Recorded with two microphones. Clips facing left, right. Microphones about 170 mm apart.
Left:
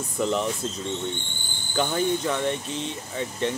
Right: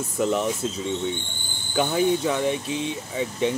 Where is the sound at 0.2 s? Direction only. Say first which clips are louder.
Right 2 dB; 5° right (ahead or behind).